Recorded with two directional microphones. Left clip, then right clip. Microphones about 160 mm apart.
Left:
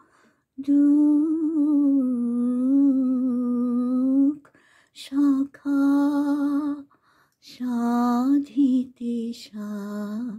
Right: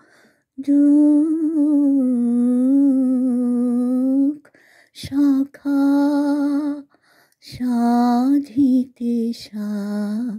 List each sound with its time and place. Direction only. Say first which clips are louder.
0.6 s lullaby: right 4 dB; 25° right (ahead or behind)
1.0 s music: right 5 dB; 30° right (ahead or behind)
2.0 s humming: right 6 dB; 30° right (ahead or behind)
3.8 s humming: right 4 dB; 5° left (ahead or behind)
4.1 s humming: right 2 dB; 15° right (ahead or behind)
4.9 s lullaby: right 4 dB; 25° right (ahead or behind)